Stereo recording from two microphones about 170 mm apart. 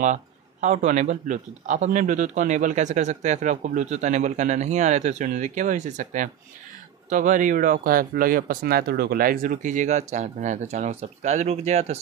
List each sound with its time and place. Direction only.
0.0 s speech: 45° right (ahead or behind)